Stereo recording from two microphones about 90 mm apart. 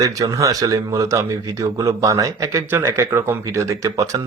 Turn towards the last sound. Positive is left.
turn(degrees=-35)  # may be behind; listen again after turning